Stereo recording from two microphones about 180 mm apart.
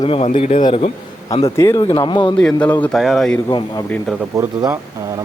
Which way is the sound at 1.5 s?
15° left (ahead or behind).